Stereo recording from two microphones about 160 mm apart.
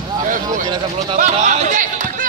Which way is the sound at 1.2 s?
50° right (ahead or behind).